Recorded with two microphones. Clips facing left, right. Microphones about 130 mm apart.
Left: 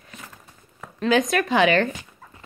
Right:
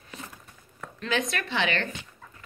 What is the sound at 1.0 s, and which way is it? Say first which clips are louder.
Speech: left 9 dB; 40° left (ahead or behind).